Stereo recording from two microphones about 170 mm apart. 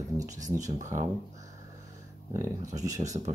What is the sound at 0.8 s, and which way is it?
Speech, 45° right (ahead or behind).